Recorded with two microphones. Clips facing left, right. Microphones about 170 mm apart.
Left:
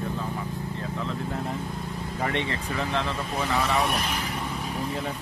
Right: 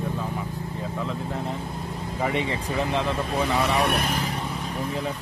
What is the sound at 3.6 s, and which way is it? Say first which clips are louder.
Speech: right 2 dB; 70° right (ahead or behind).